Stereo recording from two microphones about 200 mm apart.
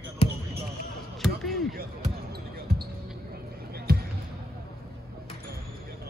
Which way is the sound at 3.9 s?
50° right (ahead or behind).